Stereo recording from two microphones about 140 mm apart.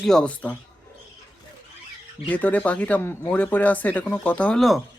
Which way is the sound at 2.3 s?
10° left (ahead or behind).